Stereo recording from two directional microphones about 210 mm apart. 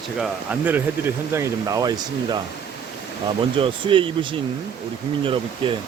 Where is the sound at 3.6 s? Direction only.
25° right (ahead or behind).